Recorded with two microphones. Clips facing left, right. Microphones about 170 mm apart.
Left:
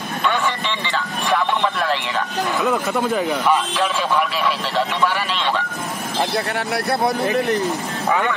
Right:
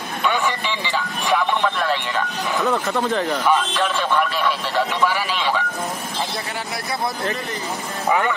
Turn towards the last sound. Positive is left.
turn(degrees=60)  # may be behind; listen again after turning